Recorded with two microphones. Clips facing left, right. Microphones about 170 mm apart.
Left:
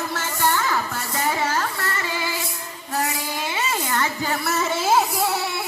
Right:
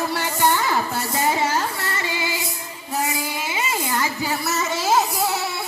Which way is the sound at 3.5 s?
10° right (ahead or behind).